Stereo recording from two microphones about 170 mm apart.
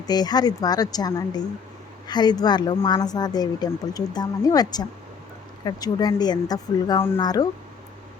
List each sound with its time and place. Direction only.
0.0 s speech: 25° left (ahead or behind)